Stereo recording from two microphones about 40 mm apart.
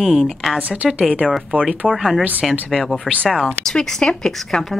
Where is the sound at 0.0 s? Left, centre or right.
Centre.